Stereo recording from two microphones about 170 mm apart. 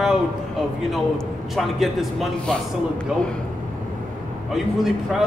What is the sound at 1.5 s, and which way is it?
A man's voice, centre (ahead or behind).